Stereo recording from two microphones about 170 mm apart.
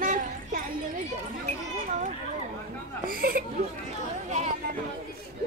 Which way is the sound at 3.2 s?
60° right (ahead or behind).